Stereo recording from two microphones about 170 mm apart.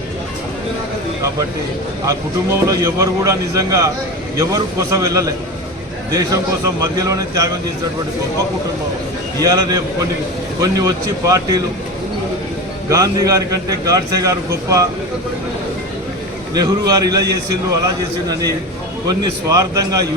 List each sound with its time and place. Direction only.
2.0 s a man's voice: 20° right (ahead or behind)
9.4 s a man's voice: 20° right (ahead or behind)
12.9 s a man's voice: 20° right (ahead or behind)
16.6 s a man's voice: 20° right (ahead or behind)